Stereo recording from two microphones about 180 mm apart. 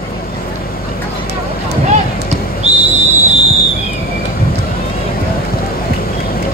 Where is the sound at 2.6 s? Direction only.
35° right (ahead or behind).